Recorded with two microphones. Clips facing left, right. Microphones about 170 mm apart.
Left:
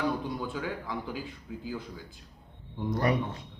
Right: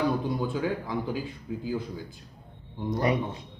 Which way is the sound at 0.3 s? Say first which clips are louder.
Right 6 dB; 30° right (ahead or behind).